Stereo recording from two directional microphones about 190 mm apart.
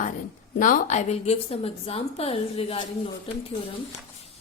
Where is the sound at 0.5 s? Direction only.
45° left (ahead or behind).